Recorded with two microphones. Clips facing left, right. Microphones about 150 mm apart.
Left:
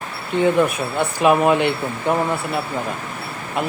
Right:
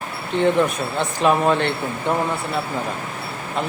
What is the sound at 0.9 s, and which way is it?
Speech, 10° left (ahead or behind).